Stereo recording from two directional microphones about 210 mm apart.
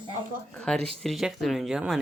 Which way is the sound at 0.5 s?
5° left (ahead or behind).